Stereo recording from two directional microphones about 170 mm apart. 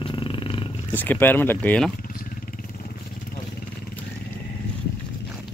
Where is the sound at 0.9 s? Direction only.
10° left (ahead or behind).